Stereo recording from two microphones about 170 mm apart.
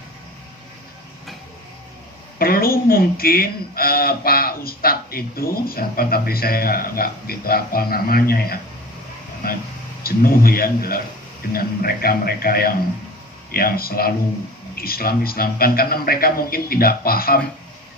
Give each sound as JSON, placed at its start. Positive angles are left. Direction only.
{"t": 2.4, "sound": "speech", "side_deg": 60}